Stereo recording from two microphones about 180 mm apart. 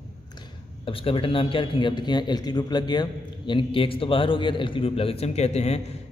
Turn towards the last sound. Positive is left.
turn(degrees=35)  # may be behind; listen again after turning